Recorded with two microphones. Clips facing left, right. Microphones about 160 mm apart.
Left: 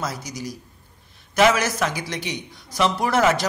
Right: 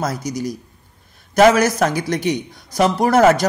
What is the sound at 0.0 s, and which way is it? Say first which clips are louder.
A man's voice: right 7 dB; 45° right (ahead or behind).